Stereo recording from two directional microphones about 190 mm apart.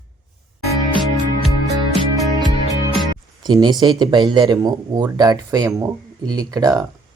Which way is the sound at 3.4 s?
20° right (ahead or behind).